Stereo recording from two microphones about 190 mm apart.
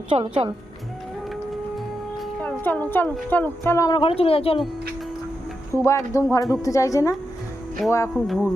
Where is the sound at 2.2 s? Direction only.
10° left (ahead or behind).